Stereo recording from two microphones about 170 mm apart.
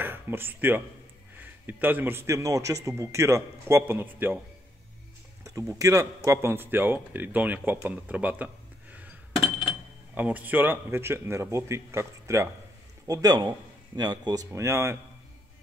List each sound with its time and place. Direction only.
0.0 s speech: 10° right (ahead or behind)
5.4 s speech: 20° right (ahead or behind)
8.9 s chink: 10° right (ahead or behind)
9.7 s speech: 10° right (ahead or behind)